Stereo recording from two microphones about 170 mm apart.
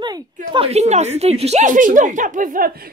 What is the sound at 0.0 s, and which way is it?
A man's voice, 30° right (ahead or behind).